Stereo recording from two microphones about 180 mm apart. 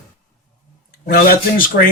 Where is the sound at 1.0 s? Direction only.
55° left (ahead or behind).